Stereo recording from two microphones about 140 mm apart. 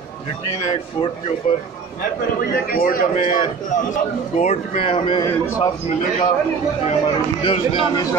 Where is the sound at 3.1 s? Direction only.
70° left (ahead or behind).